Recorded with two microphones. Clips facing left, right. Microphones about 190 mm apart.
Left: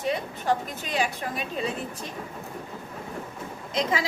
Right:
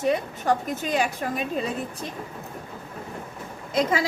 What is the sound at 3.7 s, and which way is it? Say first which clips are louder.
Speech: right 4 dB; 45° right (ahead or behind).